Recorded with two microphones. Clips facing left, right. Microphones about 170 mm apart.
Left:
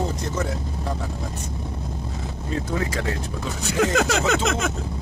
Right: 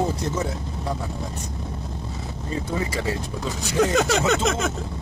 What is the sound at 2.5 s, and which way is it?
Speech, centre (ahead or behind).